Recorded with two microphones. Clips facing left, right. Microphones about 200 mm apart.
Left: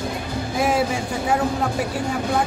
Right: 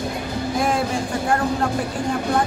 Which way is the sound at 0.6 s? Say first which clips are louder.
Left 2 dB; 5° left (ahead or behind).